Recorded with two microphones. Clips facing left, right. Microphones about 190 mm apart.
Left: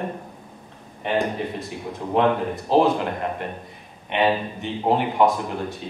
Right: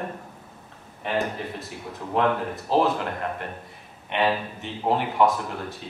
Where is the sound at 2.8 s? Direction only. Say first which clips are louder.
Left 4 dB; 15° left (ahead or behind).